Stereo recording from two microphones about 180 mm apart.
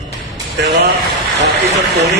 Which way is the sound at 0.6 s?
70° right (ahead or behind).